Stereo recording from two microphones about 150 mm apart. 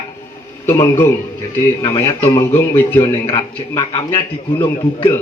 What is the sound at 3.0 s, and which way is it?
A man's voice, 30° left (ahead or behind).